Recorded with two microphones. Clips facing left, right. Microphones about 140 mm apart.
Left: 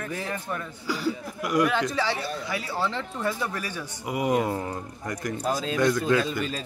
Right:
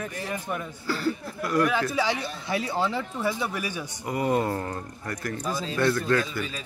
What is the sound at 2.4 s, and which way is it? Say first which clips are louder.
Speech: right 5 dB; 25° right (ahead or behind).